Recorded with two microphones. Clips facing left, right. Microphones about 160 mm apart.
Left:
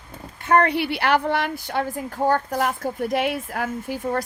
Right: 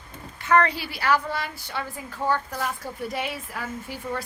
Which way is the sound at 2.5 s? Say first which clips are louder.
Left 7 dB; 60° left (ahead or behind).